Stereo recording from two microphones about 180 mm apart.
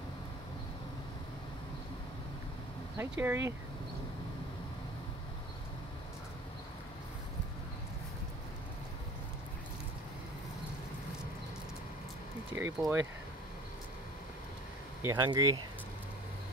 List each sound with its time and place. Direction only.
3.0 s speech: 15° right (ahead or behind)
12.5 s speech: 15° right (ahead or behind)
15.0 s speech: 20° right (ahead or behind)